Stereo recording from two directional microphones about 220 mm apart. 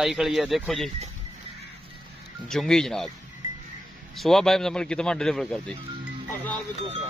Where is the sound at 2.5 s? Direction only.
Centre (ahead or behind).